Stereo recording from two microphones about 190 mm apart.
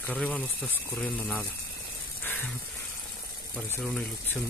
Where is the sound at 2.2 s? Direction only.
10° left (ahead or behind).